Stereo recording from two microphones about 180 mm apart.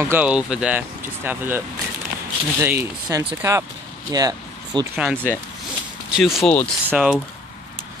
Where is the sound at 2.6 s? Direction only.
15° right (ahead or behind).